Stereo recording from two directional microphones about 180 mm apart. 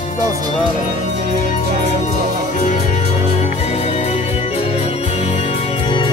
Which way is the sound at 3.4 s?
35° left (ahead or behind).